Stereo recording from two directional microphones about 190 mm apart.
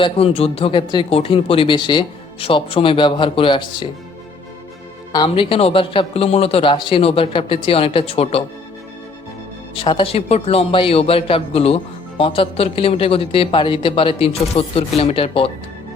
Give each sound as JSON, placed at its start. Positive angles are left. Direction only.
{"t": 0.0, "sound": "a man's voice", "side_deg": 30}
{"t": 5.1, "sound": "a man's voice", "side_deg": 25}
{"t": 9.7, "sound": "a man's voice", "side_deg": 30}